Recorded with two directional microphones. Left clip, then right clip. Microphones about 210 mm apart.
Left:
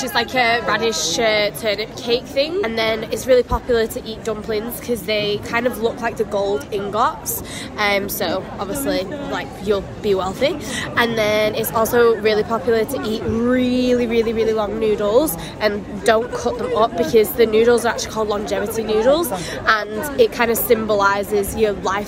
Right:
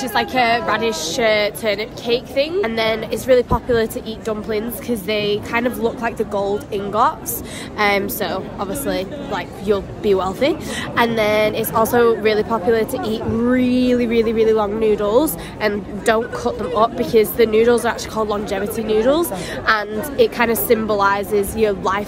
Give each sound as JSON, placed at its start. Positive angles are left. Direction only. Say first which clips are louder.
{"t": 0.0, "sound": "a woman's voice", "louder": "right 1 dB", "side_deg": -15}